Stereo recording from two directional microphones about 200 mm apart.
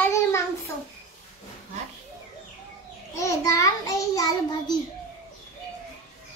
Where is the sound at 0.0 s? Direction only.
15° left (ahead or behind).